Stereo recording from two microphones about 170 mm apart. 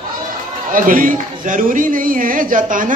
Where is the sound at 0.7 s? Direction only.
55° right (ahead or behind).